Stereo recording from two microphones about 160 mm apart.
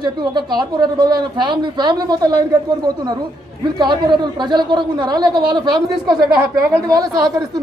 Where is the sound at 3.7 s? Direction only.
30° right (ahead or behind).